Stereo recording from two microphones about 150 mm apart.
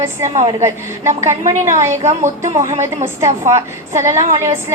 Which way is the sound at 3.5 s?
20° right (ahead or behind).